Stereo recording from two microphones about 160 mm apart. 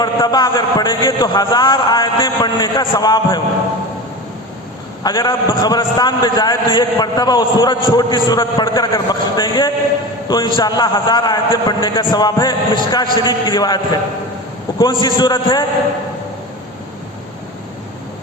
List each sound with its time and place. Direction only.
0.0 s a man's voice: 25° left (ahead or behind)
5.0 s a man's voice: 25° left (ahead or behind)